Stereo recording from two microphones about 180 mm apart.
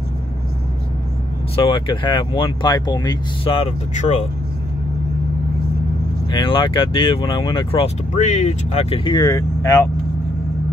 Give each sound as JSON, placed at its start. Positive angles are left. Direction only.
{"t": 1.6, "sound": "speech", "side_deg": 25}
{"t": 6.3, "sound": "speech", "side_deg": 30}
{"t": 8.1, "sound": "speech", "side_deg": 40}